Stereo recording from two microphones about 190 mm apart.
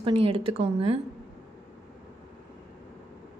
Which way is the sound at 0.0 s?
30° right (ahead or behind).